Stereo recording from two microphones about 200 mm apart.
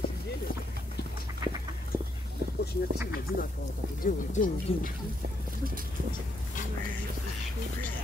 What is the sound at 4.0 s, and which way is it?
Speech, 45° left (ahead or behind).